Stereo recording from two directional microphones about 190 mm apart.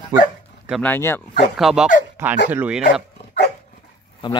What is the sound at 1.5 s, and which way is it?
Speech, centre (ahead or behind).